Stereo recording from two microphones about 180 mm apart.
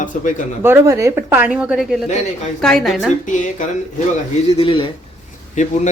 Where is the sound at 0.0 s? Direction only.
45° left (ahead or behind).